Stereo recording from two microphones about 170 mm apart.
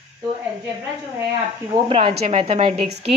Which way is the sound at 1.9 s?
30° right (ahead or behind).